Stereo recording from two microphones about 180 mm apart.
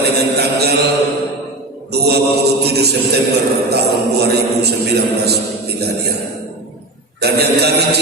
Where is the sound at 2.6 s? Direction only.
65° right (ahead or behind).